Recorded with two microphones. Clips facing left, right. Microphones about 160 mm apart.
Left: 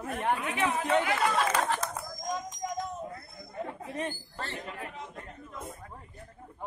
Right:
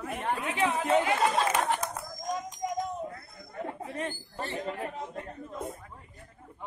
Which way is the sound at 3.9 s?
20° left (ahead or behind).